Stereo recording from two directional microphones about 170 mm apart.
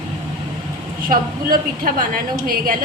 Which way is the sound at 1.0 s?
55° right (ahead or behind).